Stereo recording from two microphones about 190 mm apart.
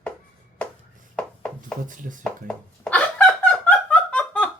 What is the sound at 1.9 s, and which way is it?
Speech, 45° right (ahead or behind).